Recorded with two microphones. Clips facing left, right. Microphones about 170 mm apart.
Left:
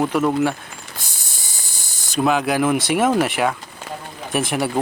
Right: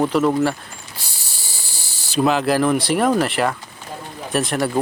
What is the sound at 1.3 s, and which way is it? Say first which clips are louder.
Hiss: right 2 dB; 20° left (ahead or behind).